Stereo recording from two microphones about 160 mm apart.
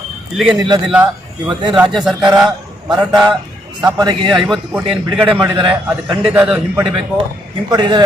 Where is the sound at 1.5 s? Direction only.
25° right (ahead or behind).